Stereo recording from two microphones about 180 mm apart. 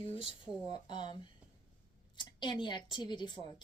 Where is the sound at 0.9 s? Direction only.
25° left (ahead or behind).